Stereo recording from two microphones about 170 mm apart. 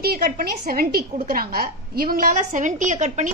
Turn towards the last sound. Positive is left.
turn(degrees=-45)  # may be behind; listen again after turning